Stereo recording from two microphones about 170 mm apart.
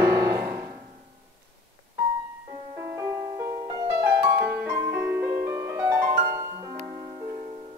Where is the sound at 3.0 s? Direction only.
20° right (ahead or behind).